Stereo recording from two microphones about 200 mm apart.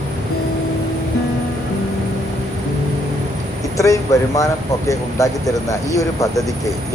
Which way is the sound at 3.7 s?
15° left (ahead or behind).